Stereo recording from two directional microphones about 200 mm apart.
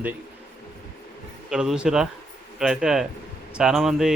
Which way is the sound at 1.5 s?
5° right (ahead or behind).